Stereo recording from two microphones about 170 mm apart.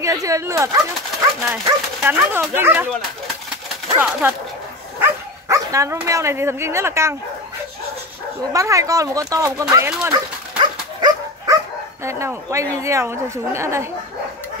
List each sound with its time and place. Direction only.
0.0 s a woman's voice: 20° right (ahead or behind)
4.2 s a woman's voice: 10° right (ahead or behind)
8.5 s speech: 20° right (ahead or behind)
10.6 s dog: 25° right (ahead or behind)
12.0 s a woman's voice: 15° right (ahead or behind)